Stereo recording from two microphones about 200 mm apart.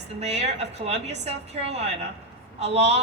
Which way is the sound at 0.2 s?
30° right (ahead or behind).